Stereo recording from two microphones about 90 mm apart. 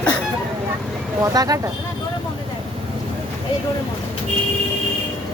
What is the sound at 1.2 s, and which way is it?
Speech, 45° right (ahead or behind).